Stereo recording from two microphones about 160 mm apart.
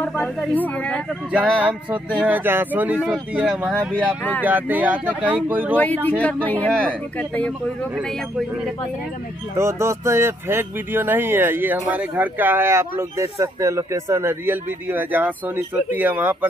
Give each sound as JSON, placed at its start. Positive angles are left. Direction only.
{"t": 0.0, "sound": "a sound", "side_deg": 10}
{"t": 0.6, "sound": "speech", "side_deg": 10}
{"t": 1.3, "sound": "speech", "side_deg": -10}
{"t": 6.2, "sound": "speech", "side_deg": 10}
{"t": 9.6, "sound": "speech", "side_deg": -15}